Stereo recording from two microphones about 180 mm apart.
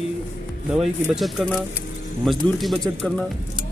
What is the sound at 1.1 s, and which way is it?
Speech, centre (ahead or behind).